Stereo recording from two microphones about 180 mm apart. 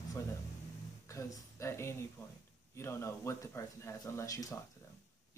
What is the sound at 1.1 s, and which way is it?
Speech, 15° left (ahead or behind).